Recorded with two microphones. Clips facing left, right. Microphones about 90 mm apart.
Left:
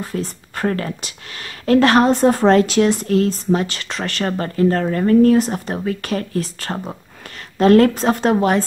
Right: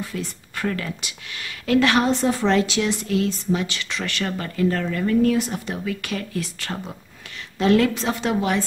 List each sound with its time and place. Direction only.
0.0 s a woman's voice: 40° left (ahead or behind)